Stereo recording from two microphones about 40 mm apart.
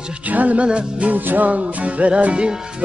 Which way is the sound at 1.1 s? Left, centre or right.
Right.